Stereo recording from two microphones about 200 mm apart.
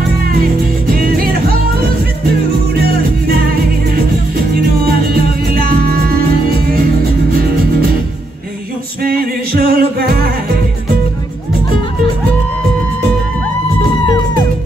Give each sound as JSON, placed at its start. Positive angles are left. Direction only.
{"t": 0.3, "sound": "music", "side_deg": -50}
{"t": 6.5, "sound": "music", "side_deg": -50}
{"t": 9.0, "sound": "music", "side_deg": -50}